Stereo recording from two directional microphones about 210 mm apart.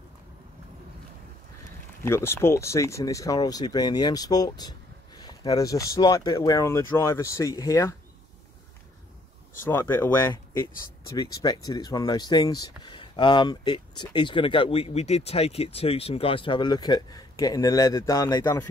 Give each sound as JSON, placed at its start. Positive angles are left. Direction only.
{"t": 2.0, "sound": "speech", "side_deg": 10}
{"t": 9.7, "sound": "speech", "side_deg": 10}